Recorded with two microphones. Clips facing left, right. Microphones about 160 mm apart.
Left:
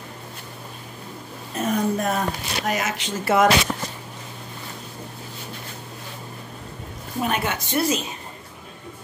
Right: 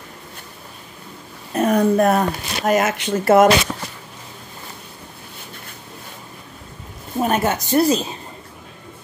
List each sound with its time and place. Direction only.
1.6 s speech: 60° right (ahead or behind)
7.2 s a woman's voice: 45° right (ahead or behind)